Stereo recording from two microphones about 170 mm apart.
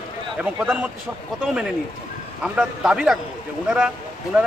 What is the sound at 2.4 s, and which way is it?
Speech, 5° right (ahead or behind).